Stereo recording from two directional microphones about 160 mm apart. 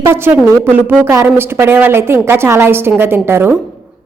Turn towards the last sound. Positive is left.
turn(degrees=-15)  # may be behind; listen again after turning